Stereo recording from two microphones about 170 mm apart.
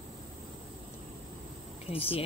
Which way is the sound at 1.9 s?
35° left (ahead or behind).